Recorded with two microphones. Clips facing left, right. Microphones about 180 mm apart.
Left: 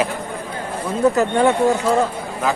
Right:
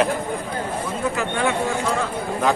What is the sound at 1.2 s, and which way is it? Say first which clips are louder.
Speech: left 7 dB; 40° left (ahead or behind).